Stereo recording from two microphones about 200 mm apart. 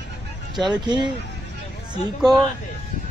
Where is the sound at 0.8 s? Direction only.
20° right (ahead or behind).